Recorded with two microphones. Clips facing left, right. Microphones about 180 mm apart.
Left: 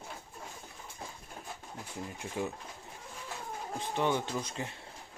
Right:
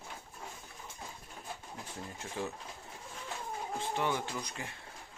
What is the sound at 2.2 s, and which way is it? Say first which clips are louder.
Speech: left 3 dB; 10° left (ahead or behind).